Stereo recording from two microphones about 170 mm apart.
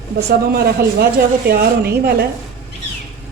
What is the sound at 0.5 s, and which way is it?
A woman's voice, 70° right (ahead or behind).